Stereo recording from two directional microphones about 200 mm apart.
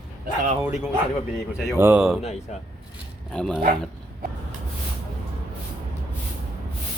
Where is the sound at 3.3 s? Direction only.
5° left (ahead or behind).